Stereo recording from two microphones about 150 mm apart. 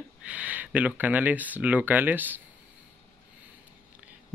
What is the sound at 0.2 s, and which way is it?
Speech, 10° right (ahead or behind).